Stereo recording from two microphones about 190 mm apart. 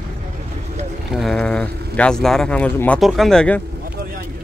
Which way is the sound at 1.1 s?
Centre (ahead or behind).